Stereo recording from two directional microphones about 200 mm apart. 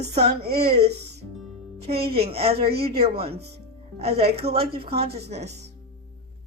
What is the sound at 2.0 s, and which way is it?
A woman's voice, 30° right (ahead or behind).